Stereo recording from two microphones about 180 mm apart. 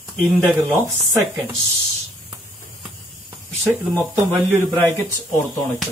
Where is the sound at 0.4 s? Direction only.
15° right (ahead or behind).